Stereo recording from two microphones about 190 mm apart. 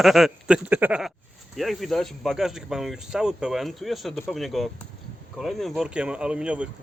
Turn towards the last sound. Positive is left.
turn(degrees=-5)  # may be behind; listen again after turning